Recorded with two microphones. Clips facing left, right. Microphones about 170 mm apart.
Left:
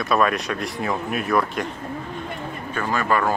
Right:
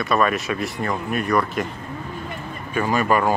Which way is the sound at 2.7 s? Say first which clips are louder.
Right 3 dB; 15° right (ahead or behind).